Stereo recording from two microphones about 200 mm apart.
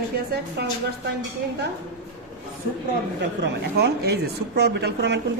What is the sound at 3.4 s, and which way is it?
Speech, 55° right (ahead or behind).